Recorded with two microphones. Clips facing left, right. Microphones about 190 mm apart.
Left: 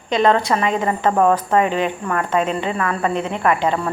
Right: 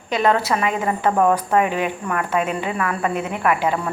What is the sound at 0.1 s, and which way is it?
A woman's voice, 10° right (ahead or behind).